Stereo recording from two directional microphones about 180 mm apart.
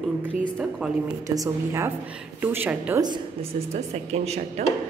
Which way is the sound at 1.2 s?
20° right (ahead or behind).